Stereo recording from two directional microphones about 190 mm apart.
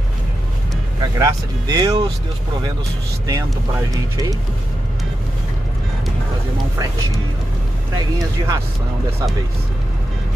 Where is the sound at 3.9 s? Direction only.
20° right (ahead or behind).